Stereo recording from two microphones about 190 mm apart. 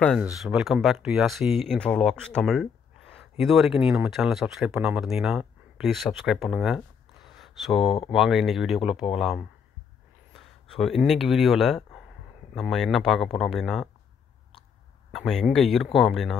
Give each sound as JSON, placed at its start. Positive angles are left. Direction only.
{"t": 0.2, "sound": "speech", "side_deg": -5}
{"t": 15.1, "sound": "speech", "side_deg": 0}